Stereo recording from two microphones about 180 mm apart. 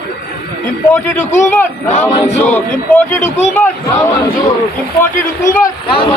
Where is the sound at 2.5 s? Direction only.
10° left (ahead or behind).